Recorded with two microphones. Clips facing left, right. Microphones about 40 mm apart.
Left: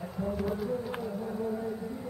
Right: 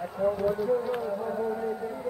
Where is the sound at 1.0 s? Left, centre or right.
Right.